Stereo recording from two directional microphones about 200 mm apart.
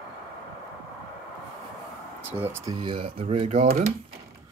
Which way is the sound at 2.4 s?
15° right (ahead or behind).